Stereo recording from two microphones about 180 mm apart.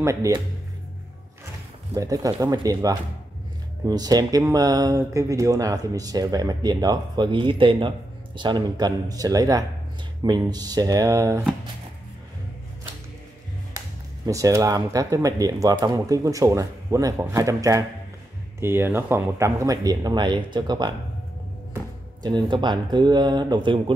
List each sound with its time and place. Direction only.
0.0 s speech: 15° right (ahead or behind)
2.0 s speech: 20° right (ahead or behind)
13.7 s speech: 20° right (ahead or behind)
22.5 s speech: 25° right (ahead or behind)